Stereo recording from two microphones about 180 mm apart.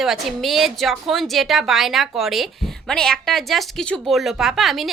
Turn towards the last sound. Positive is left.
turn(degrees=0)  # may be behind; listen again after turning